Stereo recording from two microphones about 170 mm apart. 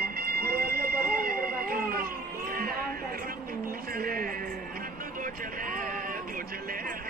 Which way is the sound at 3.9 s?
60° right (ahead or behind).